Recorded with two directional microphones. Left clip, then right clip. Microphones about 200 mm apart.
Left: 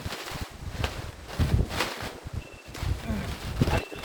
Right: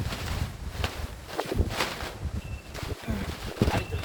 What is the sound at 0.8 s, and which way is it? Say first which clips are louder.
Walk: even; 5° left (ahead or behind).